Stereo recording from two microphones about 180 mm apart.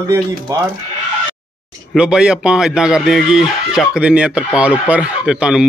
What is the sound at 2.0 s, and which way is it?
Speech, 5° right (ahead or behind).